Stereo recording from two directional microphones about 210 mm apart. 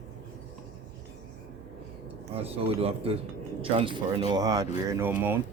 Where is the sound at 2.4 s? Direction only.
25° right (ahead or behind); by 5.3 s 10° right (ahead or behind).